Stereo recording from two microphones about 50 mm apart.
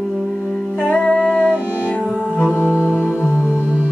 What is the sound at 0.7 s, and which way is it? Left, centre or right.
Music, left.